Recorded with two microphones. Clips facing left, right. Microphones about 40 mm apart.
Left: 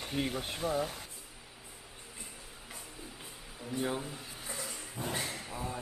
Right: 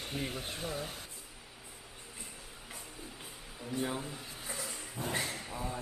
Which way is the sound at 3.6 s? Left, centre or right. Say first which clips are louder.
Left 1 dB; centre.